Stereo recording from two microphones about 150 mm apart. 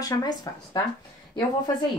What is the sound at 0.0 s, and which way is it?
Speech, 25° left (ahead or behind).